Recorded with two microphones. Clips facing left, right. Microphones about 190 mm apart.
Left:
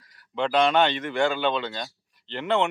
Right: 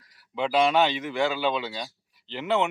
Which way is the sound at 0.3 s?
5° right (ahead or behind).